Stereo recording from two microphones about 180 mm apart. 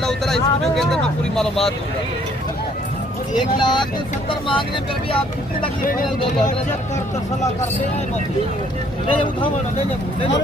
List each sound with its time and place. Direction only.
0.0 s speech: centre (ahead or behind)
3.5 s speech: 25° left (ahead or behind)
5.8 s speech: 50° left (ahead or behind)
9.0 s speech: 30° left (ahead or behind)